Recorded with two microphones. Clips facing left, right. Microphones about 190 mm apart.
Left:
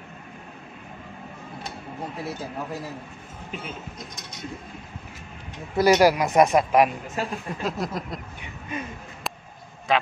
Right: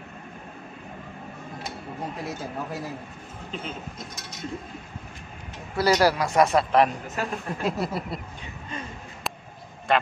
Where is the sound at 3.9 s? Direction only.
Centre (ahead or behind).